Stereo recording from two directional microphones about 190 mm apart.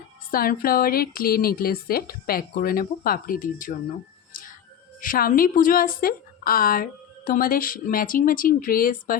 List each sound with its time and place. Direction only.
0.3 s speech: 50° left (ahead or behind)
4.9 s speech: 50° left (ahead or behind)